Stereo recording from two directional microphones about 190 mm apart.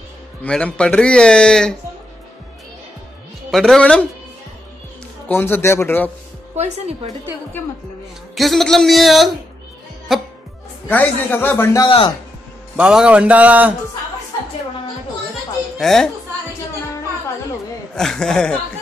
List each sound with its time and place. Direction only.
0.4 s a man's voice: 5° left (ahead or behind)
3.5 s a man's voice: centre (ahead or behind)
5.3 s a man's voice: 10° left (ahead or behind)
6.5 s a woman's voice: 35° right (ahead or behind)
8.4 s a man's voice: centre (ahead or behind); by 12.1 s 25° left (ahead or behind)
12.7 s a man's voice: 5° right (ahead or behind)
15.8 s a man's voice: centre (ahead or behind)
17.9 s a man's voice: centre (ahead or behind)